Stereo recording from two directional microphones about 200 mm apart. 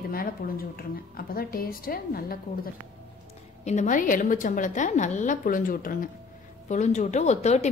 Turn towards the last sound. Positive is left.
turn(degrees=35)  # may be behind; listen again after turning